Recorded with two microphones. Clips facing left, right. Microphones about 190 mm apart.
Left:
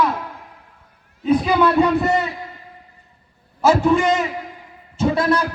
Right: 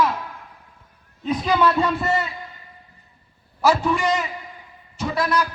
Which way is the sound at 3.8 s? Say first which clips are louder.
Left 5 dB; 25° left (ahead or behind).